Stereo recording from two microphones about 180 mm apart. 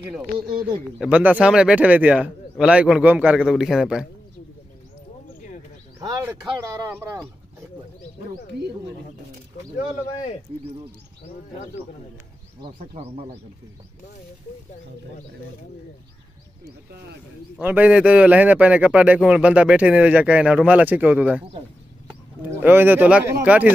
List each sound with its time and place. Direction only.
0.9 s speech: 10° right (ahead or behind)
5.9 s a man's voice: 15° right (ahead or behind)
8.3 s speech: 65° right (ahead or behind)
12.7 s speech: 35° right (ahead or behind)
17.6 s a man's voice: 10° right (ahead or behind)
22.6 s a man's voice: 10° right (ahead or behind)